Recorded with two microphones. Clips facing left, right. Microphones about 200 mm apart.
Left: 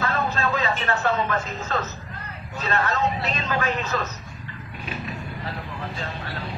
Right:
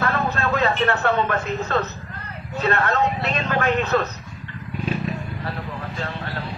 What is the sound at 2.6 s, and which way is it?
A man's voice, 60° right (ahead or behind).